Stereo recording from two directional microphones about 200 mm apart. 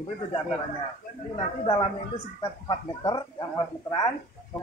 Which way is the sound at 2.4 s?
20° left (ahead or behind).